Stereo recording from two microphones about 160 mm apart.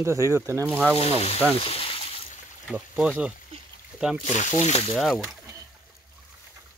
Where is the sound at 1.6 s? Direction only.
35° left (ahead or behind).